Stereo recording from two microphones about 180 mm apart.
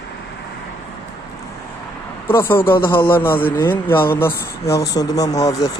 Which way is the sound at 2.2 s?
10° left (ahead or behind).